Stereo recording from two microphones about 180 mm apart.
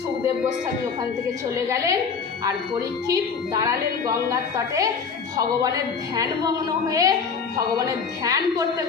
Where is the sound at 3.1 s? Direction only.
20° right (ahead or behind).